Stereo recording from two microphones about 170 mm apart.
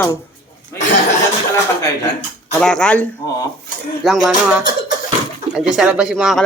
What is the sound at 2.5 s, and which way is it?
Speech, 5° left (ahead or behind).